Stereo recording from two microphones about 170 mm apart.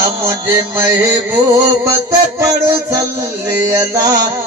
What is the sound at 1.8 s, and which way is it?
Music, 20° right (ahead or behind).